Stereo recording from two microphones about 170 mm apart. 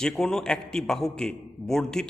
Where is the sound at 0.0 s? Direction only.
5° left (ahead or behind).